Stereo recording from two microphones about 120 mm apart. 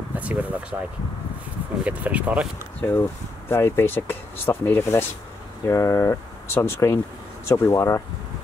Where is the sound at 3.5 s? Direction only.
20° left (ahead or behind).